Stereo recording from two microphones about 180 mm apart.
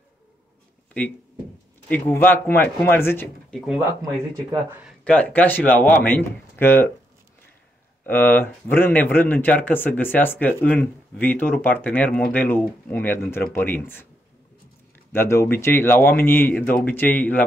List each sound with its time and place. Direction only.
1.9 s speech: 10° left (ahead or behind)
4.0 s speech: 20° right (ahead or behind)
5.0 s speech: 5° left (ahead or behind)
8.0 s speech: 10° left (ahead or behind)
15.1 s speech: 15° left (ahead or behind)